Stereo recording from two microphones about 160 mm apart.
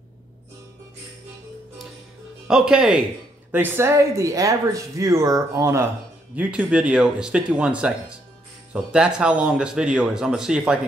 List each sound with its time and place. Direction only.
2.4 s speech: 5° right (ahead or behind)
6.3 s speech: 5° right (ahead or behind)